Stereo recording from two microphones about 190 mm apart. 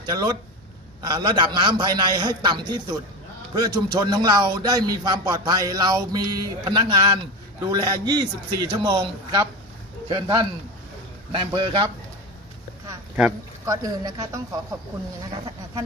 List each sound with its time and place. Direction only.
0.1 s a man's voice: 20° right (ahead or behind)
13.7 s speech: 20° right (ahead or behind)